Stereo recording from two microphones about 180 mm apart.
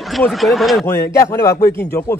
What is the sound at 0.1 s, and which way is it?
Speech, centre (ahead or behind).